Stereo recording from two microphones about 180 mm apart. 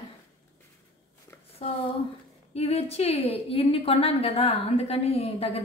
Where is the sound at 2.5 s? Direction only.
35° left (ahead or behind).